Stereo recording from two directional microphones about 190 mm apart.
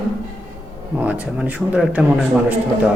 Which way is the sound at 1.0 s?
5° right (ahead or behind).